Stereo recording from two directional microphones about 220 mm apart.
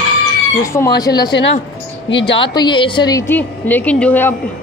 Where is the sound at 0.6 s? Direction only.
15° left (ahead or behind).